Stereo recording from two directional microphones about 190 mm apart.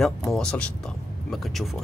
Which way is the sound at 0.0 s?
Centre (ahead or behind).